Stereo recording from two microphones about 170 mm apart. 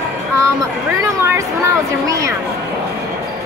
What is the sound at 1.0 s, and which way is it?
Speech, 15° right (ahead or behind).